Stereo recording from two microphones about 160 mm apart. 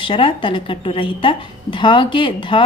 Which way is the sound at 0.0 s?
30° left (ahead or behind).